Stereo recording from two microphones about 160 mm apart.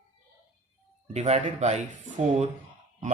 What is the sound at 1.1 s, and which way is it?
Speech, 40° right (ahead or behind).